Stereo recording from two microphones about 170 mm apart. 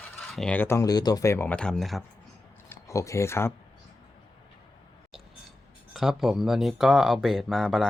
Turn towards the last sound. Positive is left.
turn(degrees=0)  # may be behind; listen again after turning